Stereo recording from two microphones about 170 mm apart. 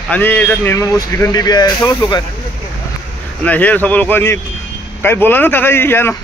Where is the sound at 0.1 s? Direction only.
10° left (ahead or behind).